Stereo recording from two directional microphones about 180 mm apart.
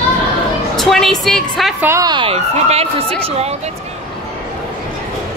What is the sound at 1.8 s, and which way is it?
Speech, 20° right (ahead or behind).